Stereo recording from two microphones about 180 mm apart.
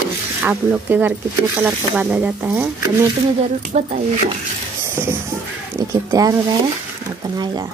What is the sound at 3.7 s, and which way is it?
Speech, 40° right (ahead or behind).